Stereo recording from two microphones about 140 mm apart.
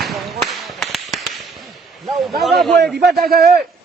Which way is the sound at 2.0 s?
Centre (ahead or behind).